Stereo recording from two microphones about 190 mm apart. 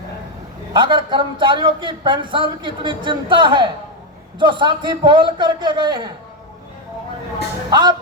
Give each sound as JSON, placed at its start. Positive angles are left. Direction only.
{"t": 0.7, "sound": "a man's voice", "side_deg": -25}
{"t": 7.7, "sound": "a man's voice", "side_deg": -20}